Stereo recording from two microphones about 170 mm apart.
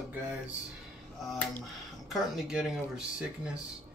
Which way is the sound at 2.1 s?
Centre (ahead or behind).